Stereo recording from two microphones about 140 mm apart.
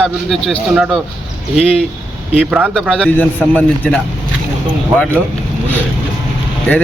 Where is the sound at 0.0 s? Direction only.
5° left (ahead or behind).